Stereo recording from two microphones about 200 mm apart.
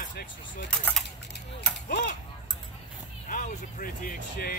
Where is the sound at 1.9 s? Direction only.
55° left (ahead or behind).